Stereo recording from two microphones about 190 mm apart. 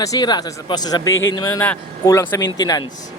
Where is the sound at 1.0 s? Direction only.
90° left.